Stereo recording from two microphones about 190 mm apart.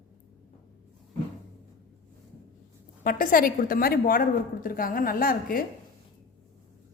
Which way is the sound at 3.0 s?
45° left (ahead or behind).